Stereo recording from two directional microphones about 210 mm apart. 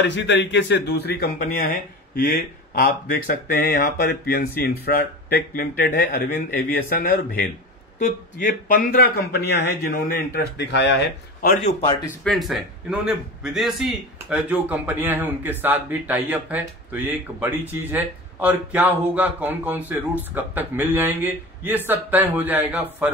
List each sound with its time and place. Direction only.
0.0 s speech: 55° left (ahead or behind)
11.4 s speech: 45° left (ahead or behind)
12.2 s a man's voice: centre (ahead or behind)